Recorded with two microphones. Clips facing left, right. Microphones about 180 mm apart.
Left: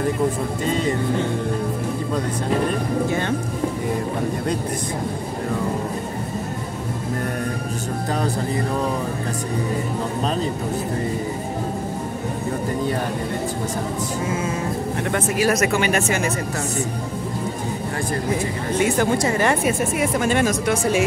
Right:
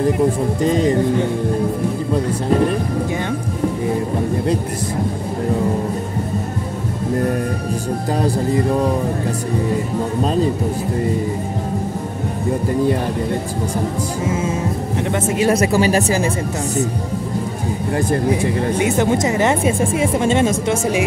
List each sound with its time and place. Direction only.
15.0 s speech: 20° right (ahead or behind)
18.8 s speech: 20° right (ahead or behind)